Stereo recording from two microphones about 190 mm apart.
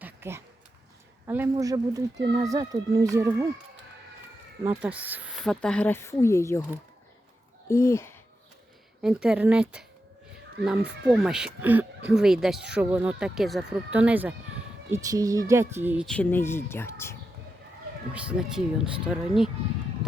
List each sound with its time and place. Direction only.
0.0 s a sound: 15° right (ahead or behind)
1.3 s speech: 15° right (ahead or behind)
4.6 s speech: 10° right (ahead or behind)
5.4 s speech: 5° left (ahead or behind)
7.7 s speech: 15° left (ahead or behind)
9.0 s speech: 5° right (ahead or behind)
16.0 s speech: 10° left (ahead or behind)
18.1 s speech: 5° right (ahead or behind)